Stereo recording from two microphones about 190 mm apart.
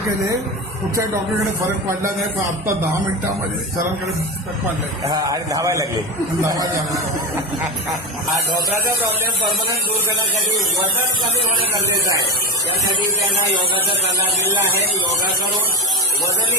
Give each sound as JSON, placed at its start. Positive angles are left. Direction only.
{"t": 1.9, "sound": "a man's voice", "side_deg": -15}
{"t": 4.6, "sound": "a man's voice", "side_deg": -20}